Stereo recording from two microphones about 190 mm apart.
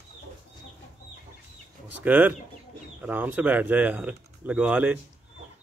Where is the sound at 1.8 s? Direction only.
10° right (ahead or behind).